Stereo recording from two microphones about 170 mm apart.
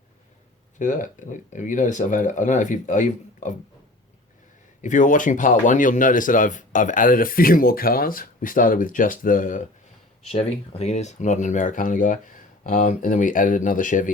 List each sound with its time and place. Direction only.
0.8 s speech: 50° left (ahead or behind)
4.8 s speech: 45° left (ahead or behind)
10.2 s speech: 35° left (ahead or behind)